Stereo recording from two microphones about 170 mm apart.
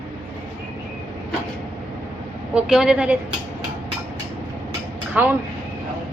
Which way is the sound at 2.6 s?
5° right (ahead or behind).